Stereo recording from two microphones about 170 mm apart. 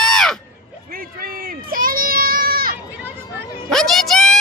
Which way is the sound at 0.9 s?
60° right (ahead or behind).